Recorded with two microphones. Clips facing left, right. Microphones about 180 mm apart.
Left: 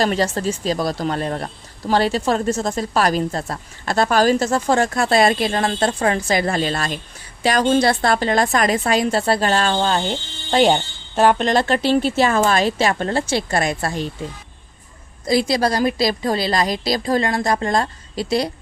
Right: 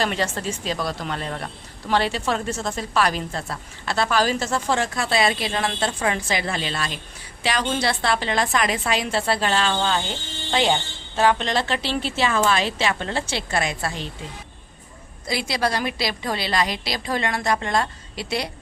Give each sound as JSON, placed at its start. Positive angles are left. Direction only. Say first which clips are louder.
{"t": 0.0, "sound": "a woman's voice", "louder": "left 5 dB", "side_deg": 40}
{"t": 15.3, "sound": "a woman's voice", "louder": "left 7 dB", "side_deg": 40}